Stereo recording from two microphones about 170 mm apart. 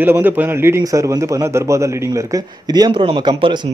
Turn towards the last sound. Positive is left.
turn(degrees=-25)  # may be behind; listen again after turning